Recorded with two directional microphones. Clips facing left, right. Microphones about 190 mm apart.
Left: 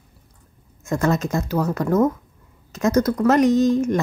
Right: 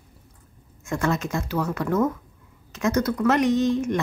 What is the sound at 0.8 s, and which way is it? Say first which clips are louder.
A woman's voice: left 4 dB; 40° left (ahead or behind).